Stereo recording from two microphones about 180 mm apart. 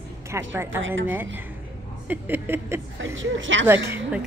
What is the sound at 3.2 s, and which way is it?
Speech, 90° right.